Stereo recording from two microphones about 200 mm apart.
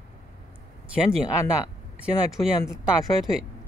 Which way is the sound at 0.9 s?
5° right (ahead or behind).